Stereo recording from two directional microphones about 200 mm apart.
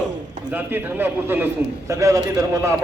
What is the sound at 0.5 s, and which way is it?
A man's voice, 10° right (ahead or behind).